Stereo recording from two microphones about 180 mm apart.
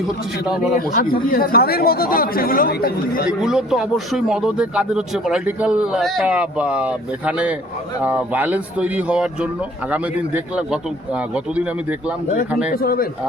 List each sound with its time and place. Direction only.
0.9 s speech: 55° left (ahead or behind)
3.2 s a man's voice: 5° right (ahead or behind)
12.7 s speech: 55° left (ahead or behind)